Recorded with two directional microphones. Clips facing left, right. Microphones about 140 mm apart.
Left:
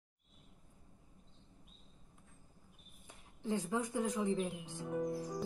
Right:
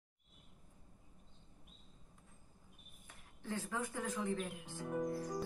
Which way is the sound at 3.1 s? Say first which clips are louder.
Left 6 dB; 20° left (ahead or behind).